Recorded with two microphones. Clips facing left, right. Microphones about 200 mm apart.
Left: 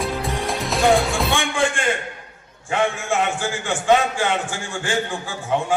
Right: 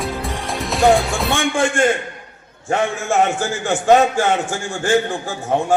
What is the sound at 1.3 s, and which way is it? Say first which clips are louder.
A man's voice: right 3 dB; 45° right (ahead or behind).